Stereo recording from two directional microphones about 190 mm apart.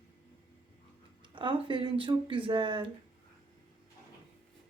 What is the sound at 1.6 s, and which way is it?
Speech, 25° right (ahead or behind).